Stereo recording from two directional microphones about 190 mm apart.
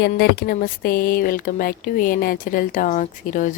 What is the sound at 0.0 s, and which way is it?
Speech, 55° left (ahead or behind).